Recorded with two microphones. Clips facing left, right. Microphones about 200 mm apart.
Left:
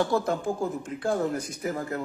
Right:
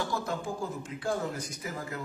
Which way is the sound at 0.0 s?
55° left (ahead or behind).